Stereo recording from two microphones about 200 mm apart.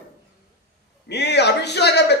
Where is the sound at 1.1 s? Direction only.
55° left (ahead or behind).